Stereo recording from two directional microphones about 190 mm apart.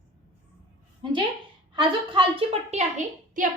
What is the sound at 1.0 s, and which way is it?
A woman's voice, 25° right (ahead or behind).